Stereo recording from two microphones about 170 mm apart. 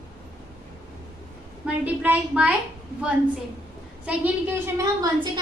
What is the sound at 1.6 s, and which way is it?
Speech, 10° right (ahead or behind).